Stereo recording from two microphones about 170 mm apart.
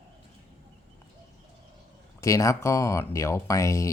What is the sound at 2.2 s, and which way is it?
Speech, 20° left (ahead or behind).